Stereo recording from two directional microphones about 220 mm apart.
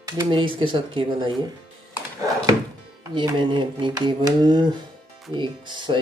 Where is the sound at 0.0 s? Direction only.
20° right (ahead or behind).